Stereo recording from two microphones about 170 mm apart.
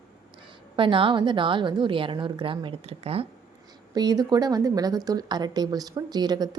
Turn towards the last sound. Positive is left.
turn(degrees=-25)  # may be behind; listen again after turning